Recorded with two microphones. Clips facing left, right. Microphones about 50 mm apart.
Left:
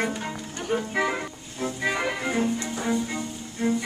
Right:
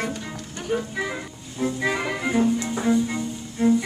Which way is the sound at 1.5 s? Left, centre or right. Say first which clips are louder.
Right 3 dB; centre.